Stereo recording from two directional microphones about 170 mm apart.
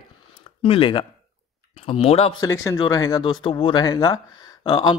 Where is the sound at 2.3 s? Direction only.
20° left (ahead or behind).